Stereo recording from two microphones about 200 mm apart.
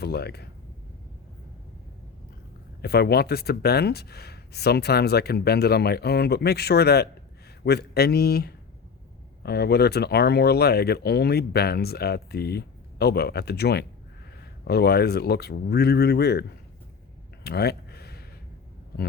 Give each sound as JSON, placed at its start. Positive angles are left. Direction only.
{"t": 0.0, "sound": "speech", "side_deg": 55}
{"t": 2.8, "sound": "speech", "side_deg": 50}
{"t": 17.4, "sound": "a sound", "side_deg": 55}